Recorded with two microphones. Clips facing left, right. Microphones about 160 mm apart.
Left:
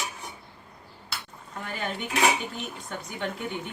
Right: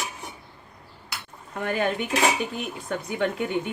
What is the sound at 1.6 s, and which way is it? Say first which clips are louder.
Speech: right 9 dB; 60° right (ahead or behind).